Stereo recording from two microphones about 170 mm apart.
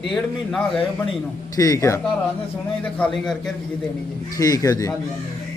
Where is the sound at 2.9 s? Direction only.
5° left (ahead or behind).